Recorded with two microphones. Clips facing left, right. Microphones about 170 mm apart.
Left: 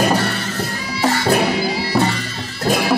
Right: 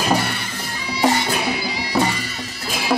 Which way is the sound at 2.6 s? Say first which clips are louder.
Left 11 dB; 55° left (ahead or behind).